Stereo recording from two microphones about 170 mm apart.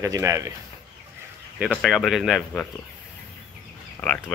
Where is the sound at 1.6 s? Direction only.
5° right (ahead or behind).